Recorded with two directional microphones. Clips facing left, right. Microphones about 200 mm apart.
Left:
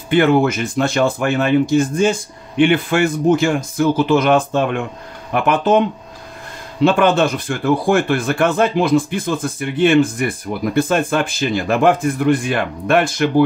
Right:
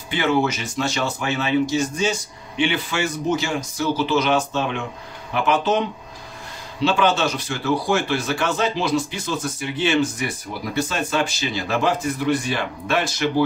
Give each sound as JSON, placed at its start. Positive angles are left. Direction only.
{"t": 0.1, "sound": "speech", "side_deg": 55}